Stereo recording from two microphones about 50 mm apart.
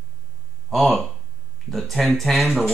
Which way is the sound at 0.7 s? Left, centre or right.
Centre.